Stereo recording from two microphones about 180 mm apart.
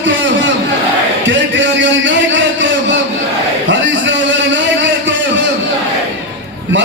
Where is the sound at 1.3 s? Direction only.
90° right.